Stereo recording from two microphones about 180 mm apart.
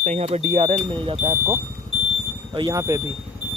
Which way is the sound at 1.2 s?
15° right (ahead or behind).